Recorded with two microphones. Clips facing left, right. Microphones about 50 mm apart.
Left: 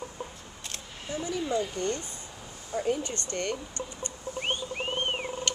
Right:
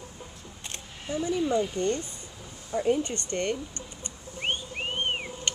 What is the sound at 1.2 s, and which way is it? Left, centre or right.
Speech, right.